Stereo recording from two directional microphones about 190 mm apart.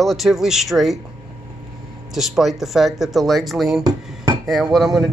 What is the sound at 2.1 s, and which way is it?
Speech, centre (ahead or behind).